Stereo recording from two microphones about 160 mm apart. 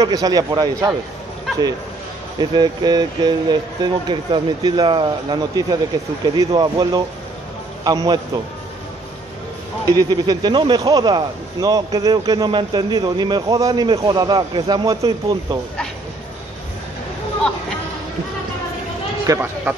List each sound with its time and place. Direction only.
0.0 s speech: 25° right (ahead or behind)
2.3 s speech: 25° right (ahead or behind)
9.8 s speech: 25° right (ahead or behind)
19.2 s speech: 15° right (ahead or behind)